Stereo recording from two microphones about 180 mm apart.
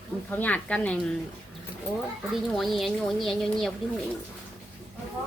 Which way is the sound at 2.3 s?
Centre (ahead or behind).